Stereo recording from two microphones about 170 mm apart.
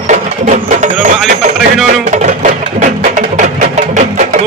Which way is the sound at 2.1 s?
45° right (ahead or behind).